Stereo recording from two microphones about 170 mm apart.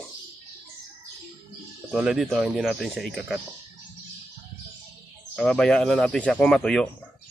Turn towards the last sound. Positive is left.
turn(degrees=5)  # may be behind; listen again after turning